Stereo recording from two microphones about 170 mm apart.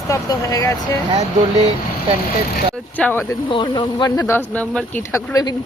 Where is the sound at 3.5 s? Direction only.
30° left (ahead or behind).